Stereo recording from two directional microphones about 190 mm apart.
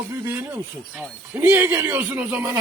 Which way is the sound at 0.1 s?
15° right (ahead or behind).